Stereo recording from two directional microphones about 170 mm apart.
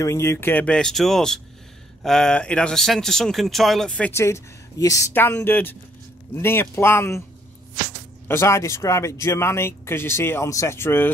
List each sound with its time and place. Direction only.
0.0 s speech: 15° left (ahead or behind)
8.3 s speech: 15° left (ahead or behind)